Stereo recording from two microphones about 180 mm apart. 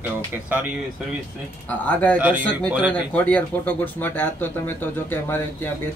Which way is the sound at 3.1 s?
10° left (ahead or behind).